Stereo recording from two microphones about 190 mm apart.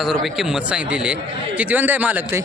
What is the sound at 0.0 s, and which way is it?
Speech, centre (ahead or behind).